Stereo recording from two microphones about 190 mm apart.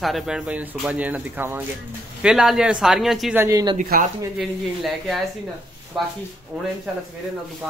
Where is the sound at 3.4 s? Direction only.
20° right (ahead or behind).